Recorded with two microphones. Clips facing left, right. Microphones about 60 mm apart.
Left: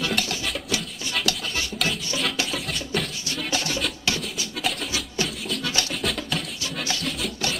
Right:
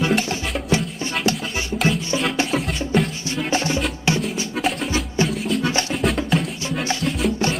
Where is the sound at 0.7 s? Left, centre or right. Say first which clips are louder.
Right 7 dB; right.